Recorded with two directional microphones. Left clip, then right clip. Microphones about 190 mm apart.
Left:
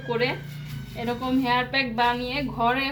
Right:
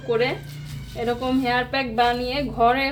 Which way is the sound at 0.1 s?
20° right (ahead or behind).